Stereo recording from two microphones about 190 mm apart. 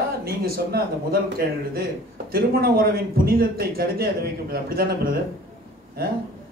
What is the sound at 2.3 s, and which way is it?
Speech, 50° right (ahead or behind).